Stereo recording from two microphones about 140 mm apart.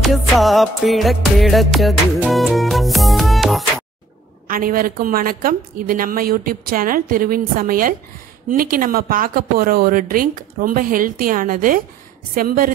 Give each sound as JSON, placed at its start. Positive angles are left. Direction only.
{"t": 0.0, "sound": "music", "side_deg": 0}
{"t": 4.5, "sound": "a woman's voice", "side_deg": -90}